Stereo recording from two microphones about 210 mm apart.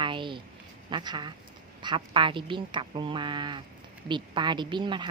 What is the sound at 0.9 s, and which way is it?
Speech, 20° right (ahead or behind).